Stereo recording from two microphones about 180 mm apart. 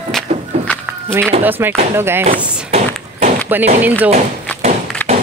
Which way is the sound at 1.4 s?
10° right (ahead or behind).